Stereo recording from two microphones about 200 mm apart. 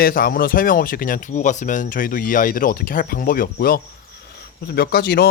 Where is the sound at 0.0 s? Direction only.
45° left (ahead or behind).